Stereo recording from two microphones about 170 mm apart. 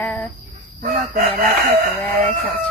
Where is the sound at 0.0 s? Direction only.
10° left (ahead or behind).